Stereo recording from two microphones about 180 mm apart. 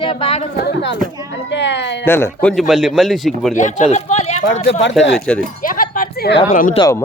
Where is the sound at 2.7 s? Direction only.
Centre (ahead or behind).